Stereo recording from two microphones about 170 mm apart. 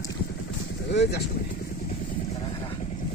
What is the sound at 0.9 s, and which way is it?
Vehicle, 80° left.